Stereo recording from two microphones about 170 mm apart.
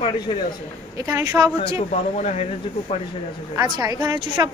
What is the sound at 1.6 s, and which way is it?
Speech, 35° left (ahead or behind).